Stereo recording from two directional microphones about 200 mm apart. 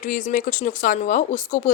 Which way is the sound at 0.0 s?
40° left (ahead or behind).